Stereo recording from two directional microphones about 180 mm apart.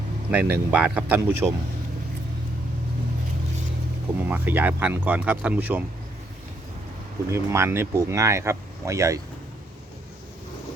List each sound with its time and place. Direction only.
0.3 s speech: 10° right (ahead or behind)
4.3 s speech: 10° right (ahead or behind)
7.3 s speech: 15° right (ahead or behind)